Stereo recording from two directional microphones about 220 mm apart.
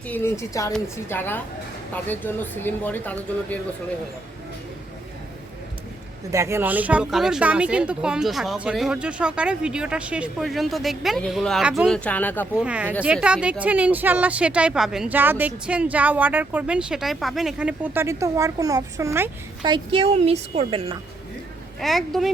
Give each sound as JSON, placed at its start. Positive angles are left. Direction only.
{"t": 0.1, "sound": "speech", "side_deg": 10}
{"t": 6.3, "sound": "speech", "side_deg": -10}
{"t": 12.5, "sound": "speech", "side_deg": -5}
{"t": 19.7, "sound": "a woman's voice", "side_deg": -25}
{"t": 21.8, "sound": "speech", "side_deg": 0}